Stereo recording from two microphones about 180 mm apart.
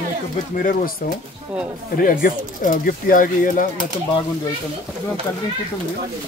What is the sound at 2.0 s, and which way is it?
Speech, 50° left (ahead or behind).